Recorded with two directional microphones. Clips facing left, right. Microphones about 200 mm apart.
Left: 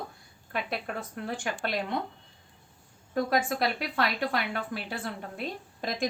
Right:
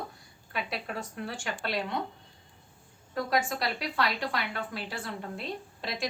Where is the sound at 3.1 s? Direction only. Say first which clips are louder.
Left 2 dB; 50° left (ahead or behind).